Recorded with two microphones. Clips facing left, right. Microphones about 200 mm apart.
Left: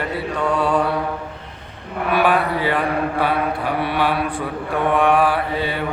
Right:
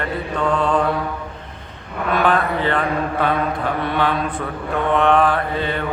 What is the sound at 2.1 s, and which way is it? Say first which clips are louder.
Mantra: even; 10° left (ahead or behind).